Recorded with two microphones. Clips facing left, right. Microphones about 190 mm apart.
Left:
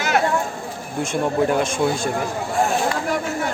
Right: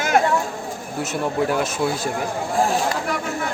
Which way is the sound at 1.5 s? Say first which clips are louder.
Left 2 dB; 5° right (ahead or behind).